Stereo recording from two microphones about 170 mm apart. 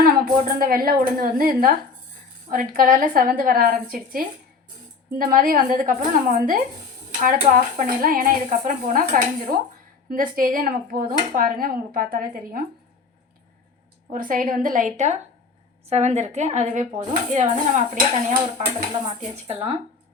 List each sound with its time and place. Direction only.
0.0 s speech: 60° right (ahead or behind)
14.1 s a woman's voice: 55° right (ahead or behind); by 19.8 s 35° right (ahead or behind)